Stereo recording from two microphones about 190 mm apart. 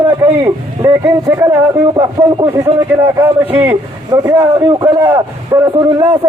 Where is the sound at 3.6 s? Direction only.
15° right (ahead or behind).